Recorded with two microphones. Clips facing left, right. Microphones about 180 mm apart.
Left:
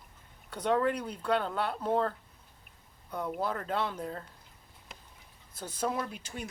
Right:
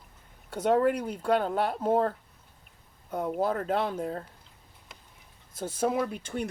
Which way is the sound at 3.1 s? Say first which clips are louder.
Right 5 dB; 40° right (ahead or behind).